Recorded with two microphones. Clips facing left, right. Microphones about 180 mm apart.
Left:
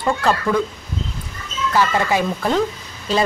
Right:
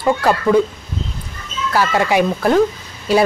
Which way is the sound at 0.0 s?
10° right (ahead or behind).